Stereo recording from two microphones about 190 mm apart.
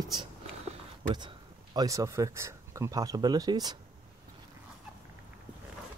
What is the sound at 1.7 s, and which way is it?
Speech, 15° right (ahead or behind).